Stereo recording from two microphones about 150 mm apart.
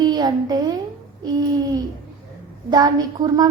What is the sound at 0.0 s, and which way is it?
Speech, 30° right (ahead or behind).